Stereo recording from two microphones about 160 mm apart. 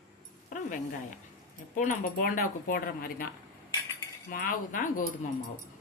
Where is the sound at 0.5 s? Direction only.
55° left (ahead or behind).